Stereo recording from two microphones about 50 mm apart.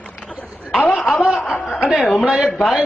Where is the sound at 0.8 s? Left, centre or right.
Left.